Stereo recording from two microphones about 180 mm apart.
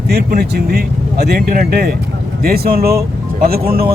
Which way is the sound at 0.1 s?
60° right (ahead or behind).